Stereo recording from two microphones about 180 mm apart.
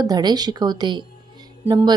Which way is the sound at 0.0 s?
20° right (ahead or behind).